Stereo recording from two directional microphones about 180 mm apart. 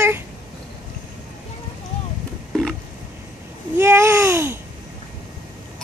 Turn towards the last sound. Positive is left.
turn(degrees=-15)  # may be behind; listen again after turning